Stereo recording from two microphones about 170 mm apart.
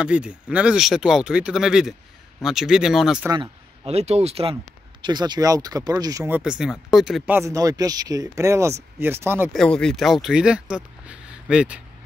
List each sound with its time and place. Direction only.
0.0 s speech: 5° right (ahead or behind)
3.3 s speech: 40° right (ahead or behind)
5.0 s speech: 25° right (ahead or behind)
9.5 s speech: 5° left (ahead or behind)